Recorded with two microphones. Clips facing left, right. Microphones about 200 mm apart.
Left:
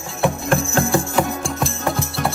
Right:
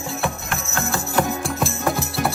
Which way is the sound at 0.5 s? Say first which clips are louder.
Left 9 dB; 30° left (ahead or behind).